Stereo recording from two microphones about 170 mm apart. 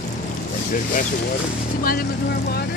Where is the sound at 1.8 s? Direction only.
60° left (ahead or behind).